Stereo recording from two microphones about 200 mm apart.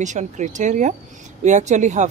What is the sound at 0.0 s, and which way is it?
Speech, 35° right (ahead or behind).